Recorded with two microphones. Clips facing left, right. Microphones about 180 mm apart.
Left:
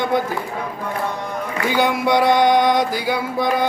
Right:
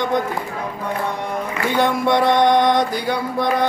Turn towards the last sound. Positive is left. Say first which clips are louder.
# even
turn(degrees=5)  # may be behind; listen again after turning